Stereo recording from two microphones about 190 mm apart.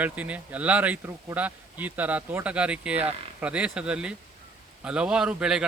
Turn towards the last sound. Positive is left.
turn(degrees=-5)  # may be behind; listen again after turning